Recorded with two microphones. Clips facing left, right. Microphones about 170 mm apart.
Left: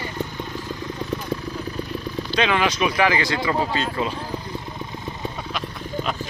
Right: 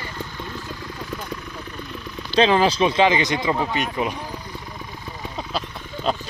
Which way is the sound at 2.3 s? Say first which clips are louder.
Right 5 dB; 30° right (ahead or behind).